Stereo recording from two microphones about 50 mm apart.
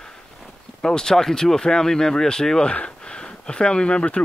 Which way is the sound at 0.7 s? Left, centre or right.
Centre.